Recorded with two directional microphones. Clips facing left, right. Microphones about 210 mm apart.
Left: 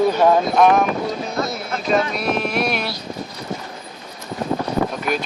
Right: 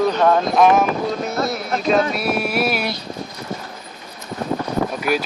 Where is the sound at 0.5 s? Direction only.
Centre (ahead or behind).